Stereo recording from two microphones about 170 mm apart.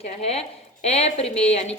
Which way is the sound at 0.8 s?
35° left (ahead or behind).